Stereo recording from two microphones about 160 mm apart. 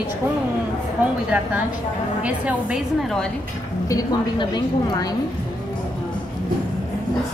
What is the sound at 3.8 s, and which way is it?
A woman's voice, 25° left (ahead or behind).